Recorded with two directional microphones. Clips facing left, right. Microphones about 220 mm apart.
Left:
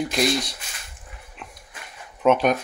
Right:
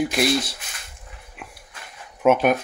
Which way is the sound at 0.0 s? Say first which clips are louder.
Right 2 dB; 5° right (ahead or behind).